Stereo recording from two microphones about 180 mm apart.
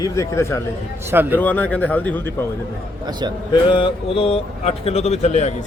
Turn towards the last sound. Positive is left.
turn(degrees=40)  # may be behind; listen again after turning